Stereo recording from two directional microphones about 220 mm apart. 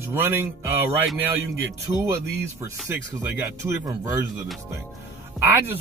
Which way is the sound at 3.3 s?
15° right (ahead or behind).